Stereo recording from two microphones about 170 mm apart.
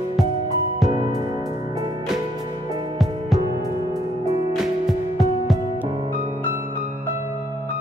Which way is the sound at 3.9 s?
20° right (ahead or behind).